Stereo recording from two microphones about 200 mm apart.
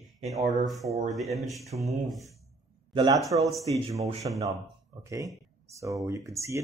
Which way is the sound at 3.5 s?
Centre (ahead or behind).